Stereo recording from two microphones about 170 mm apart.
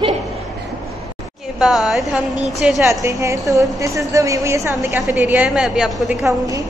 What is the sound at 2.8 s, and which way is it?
A woman's voice, 15° right (ahead or behind).